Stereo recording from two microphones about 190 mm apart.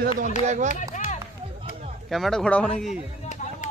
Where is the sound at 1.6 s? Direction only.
35° right (ahead or behind).